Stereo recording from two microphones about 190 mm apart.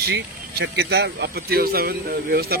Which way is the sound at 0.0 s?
60° right (ahead or behind).